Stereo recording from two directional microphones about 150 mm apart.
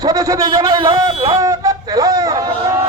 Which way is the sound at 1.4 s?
20° right (ahead or behind).